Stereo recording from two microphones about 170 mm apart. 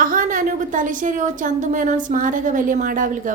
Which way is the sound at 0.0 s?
55° right (ahead or behind).